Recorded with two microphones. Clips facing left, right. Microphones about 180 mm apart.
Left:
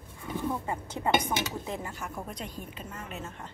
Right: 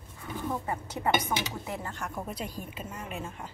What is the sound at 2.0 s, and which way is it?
A woman's voice, 5° right (ahead or behind).